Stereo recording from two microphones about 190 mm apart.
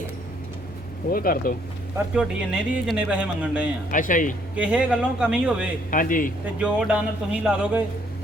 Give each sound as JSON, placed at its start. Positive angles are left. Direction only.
{"t": 1.1, "sound": "speech", "side_deg": 50}
{"t": 2.1, "sound": "a man's voice", "side_deg": -5}
{"t": 3.9, "sound": "speech", "side_deg": 45}
{"t": 4.5, "sound": "a man's voice", "side_deg": -5}
{"t": 5.9, "sound": "speech", "side_deg": 45}
{"t": 6.4, "sound": "speech", "side_deg": -5}